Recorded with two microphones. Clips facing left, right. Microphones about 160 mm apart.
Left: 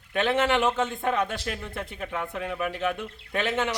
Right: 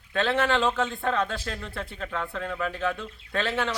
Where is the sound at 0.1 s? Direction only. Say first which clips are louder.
Left 1 dB; 20° left (ahead or behind).